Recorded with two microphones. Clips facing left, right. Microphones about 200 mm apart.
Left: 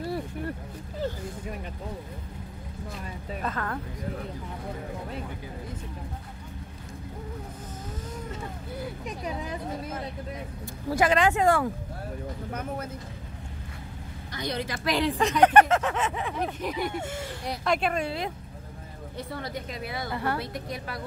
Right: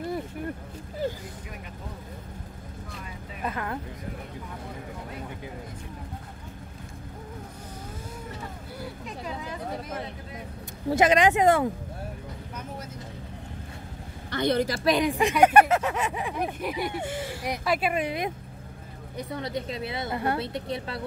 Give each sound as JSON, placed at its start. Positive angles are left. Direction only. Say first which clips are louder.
{"t": 3.4, "sound": "speech", "louder": "right 1 dB", "side_deg": -15}
{"t": 10.9, "sound": "a woman's voice", "louder": "right 2 dB", "side_deg": -20}
{"t": 14.3, "sound": "a woman's voice", "louder": "right 7 dB", "side_deg": -55}
{"t": 14.9, "sound": "a woman's voice", "louder": "right 1 dB", "side_deg": -15}